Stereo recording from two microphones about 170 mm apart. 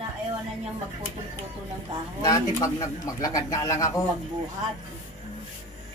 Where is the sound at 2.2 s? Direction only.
20° left (ahead or behind).